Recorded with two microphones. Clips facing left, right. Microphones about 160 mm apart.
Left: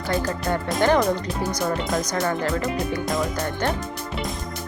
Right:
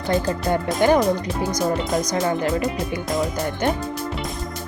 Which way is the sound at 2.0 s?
15° right (ahead or behind).